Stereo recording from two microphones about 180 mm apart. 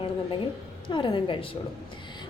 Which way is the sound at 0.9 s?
25° left (ahead or behind).